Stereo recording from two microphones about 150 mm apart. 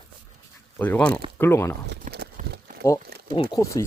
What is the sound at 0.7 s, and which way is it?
Speech, 10° left (ahead or behind).